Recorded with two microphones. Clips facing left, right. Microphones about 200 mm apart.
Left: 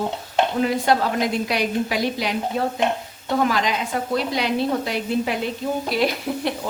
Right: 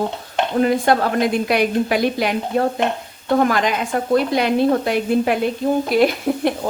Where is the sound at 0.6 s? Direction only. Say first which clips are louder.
Right 6 dB; 55° right (ahead or behind).